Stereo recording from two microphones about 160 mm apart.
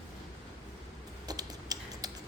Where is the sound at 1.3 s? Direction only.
25° right (ahead or behind).